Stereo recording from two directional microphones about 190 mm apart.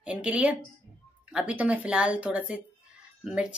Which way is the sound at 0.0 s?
5° right (ahead or behind).